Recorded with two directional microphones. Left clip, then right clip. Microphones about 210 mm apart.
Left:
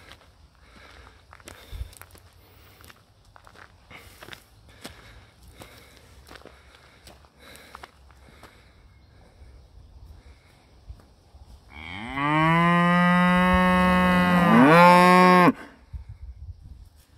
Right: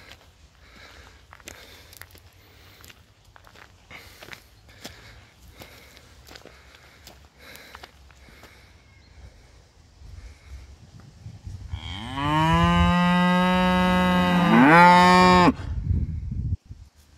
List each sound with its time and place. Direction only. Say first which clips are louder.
0.7 s a sound: right 2 dB; centre (ahead or behind)
3.3 s walk: even; 5° right (ahead or behind)
4.3 s a sound: right 1 dB; centre (ahead or behind)
11.7 s livestock: left 1 dB; 35° right (ahead or behind); by 14.6 s 5° right (ahead or behind)
14.6 s livestock: right 1 dB; 35° left (ahead or behind)
15.0 s moo: even; 10° left (ahead or behind)